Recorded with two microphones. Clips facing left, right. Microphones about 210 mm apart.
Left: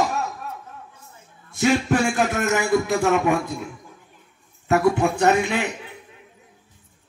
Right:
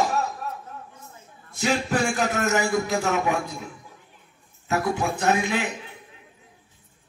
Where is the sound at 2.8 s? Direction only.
60° left (ahead or behind).